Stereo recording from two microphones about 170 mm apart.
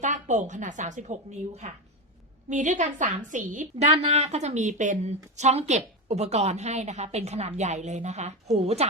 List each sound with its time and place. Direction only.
0.0 s a woman's voice: 45° right (ahead or behind)
3.9 s speech: 40° right (ahead or behind)